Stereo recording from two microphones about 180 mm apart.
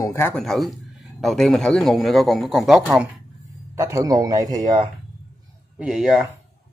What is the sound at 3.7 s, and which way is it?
Speech, 15° right (ahead or behind).